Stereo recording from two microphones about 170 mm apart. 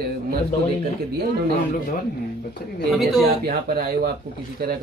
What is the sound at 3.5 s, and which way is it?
Speech, 60° right (ahead or behind).